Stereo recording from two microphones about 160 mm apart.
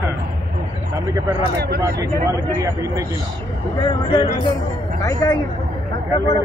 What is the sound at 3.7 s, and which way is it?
Speech, 30° left (ahead or behind).